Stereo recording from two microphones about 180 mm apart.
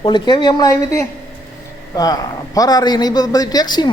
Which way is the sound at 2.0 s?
20° left (ahead or behind).